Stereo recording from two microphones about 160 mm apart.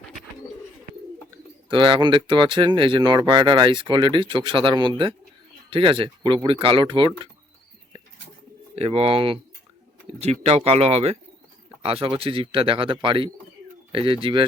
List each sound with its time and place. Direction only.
1.7 s speech: 30° right (ahead or behind)
8.7 s speech: 40° right (ahead or behind)